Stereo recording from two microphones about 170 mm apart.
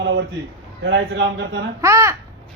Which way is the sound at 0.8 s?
90° right.